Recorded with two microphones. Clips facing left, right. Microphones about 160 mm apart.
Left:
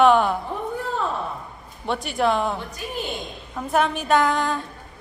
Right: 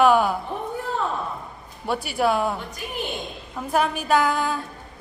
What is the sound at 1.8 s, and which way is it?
A woman's voice, 5° right (ahead or behind).